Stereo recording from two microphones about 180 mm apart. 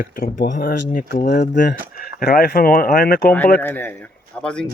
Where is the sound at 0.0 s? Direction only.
50° left (ahead or behind).